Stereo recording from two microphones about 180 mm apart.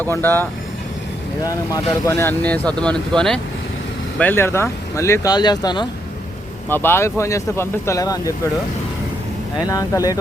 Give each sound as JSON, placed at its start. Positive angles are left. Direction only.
{"t": 0.0, "sound": "speech", "side_deg": 10}
{"t": 6.7, "sound": "speech", "side_deg": 10}
{"t": 9.6, "sound": "speech", "side_deg": 20}